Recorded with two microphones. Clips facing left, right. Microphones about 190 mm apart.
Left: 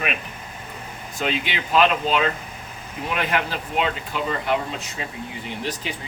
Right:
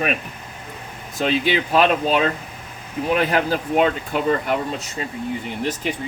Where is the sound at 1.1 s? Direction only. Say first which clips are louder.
Right 6 dB; 40° right (ahead or behind).